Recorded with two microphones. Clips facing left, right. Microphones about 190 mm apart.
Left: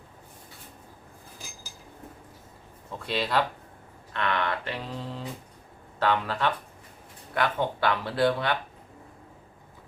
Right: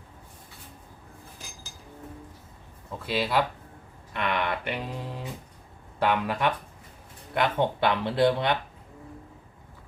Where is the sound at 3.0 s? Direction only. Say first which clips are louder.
Right 1 dB; 5° right (ahead or behind).